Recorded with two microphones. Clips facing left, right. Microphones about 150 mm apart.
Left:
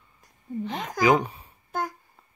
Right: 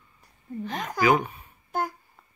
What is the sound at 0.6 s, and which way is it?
Speech, 20° left (ahead or behind).